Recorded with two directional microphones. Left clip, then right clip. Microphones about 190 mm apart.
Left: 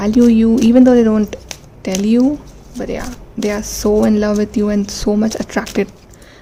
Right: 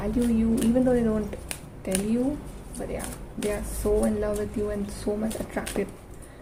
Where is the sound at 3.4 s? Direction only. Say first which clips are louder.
Left 10 dB; 55° left (ahead or behind).